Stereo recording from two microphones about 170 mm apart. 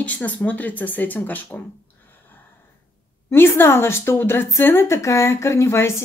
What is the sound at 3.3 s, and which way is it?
Speech, 15° left (ahead or behind).